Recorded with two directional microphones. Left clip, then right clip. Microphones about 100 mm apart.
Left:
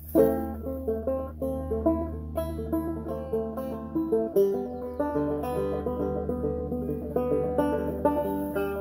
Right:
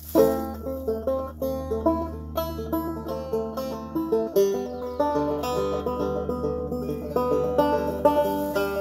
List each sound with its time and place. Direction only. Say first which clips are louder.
0.1 s music: right 2 dB; 20° right (ahead or behind)
3.9 s music: right 2 dB; 20° right (ahead or behind)